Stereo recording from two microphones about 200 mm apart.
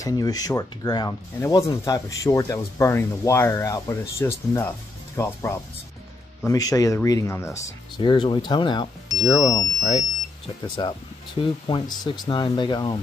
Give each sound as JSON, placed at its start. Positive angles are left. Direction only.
{"t": 0.0, "sound": "speech", "side_deg": 20}